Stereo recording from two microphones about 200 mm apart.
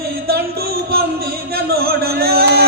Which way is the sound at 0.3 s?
50° right (ahead or behind).